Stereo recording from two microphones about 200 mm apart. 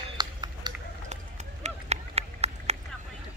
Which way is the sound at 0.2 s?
20° right (ahead or behind).